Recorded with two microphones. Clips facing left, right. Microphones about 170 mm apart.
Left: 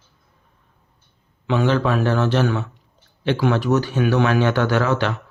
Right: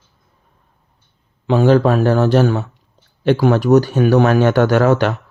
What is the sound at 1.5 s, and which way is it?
Speech, 40° right (ahead or behind).